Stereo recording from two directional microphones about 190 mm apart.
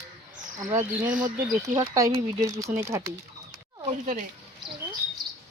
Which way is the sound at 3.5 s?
35° right (ahead or behind).